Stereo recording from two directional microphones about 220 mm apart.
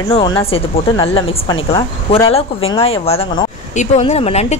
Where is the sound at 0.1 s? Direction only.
20° left (ahead or behind).